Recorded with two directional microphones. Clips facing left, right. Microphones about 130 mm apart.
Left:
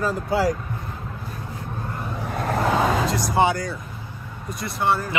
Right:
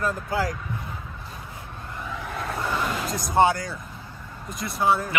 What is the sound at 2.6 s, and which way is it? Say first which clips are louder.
Vehicle: left 7 dB; 90° left.